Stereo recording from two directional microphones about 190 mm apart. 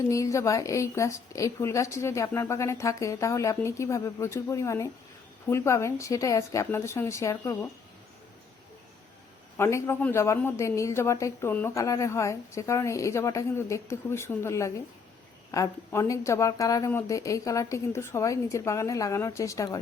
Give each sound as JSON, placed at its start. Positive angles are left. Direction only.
{"t": 0.1, "sound": "a woman's voice", "side_deg": 15}
{"t": 9.6, "sound": "a woman's voice", "side_deg": 15}